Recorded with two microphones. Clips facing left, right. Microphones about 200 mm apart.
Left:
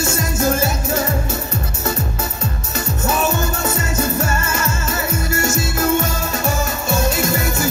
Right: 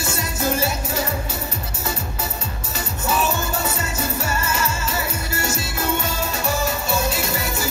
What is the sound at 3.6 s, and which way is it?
Music, 45° left (ahead or behind).